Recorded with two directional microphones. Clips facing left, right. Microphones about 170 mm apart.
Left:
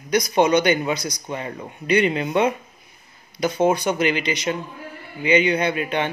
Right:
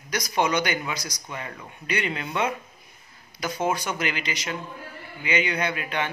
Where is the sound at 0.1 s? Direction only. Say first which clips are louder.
Left 7 dB; 20° left (ahead or behind).